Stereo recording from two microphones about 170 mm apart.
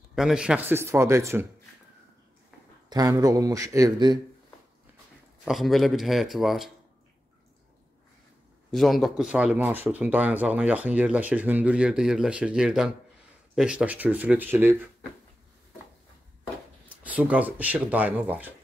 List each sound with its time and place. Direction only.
0.1 s speech: 5° right (ahead or behind)
2.9 s speech: 20° right (ahead or behind)
5.4 s speech: centre (ahead or behind)
8.7 s speech: centre (ahead or behind)
16.9 s speech: 10° right (ahead or behind)